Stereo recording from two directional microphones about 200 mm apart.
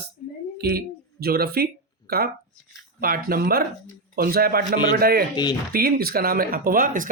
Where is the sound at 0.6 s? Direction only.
50° right (ahead or behind).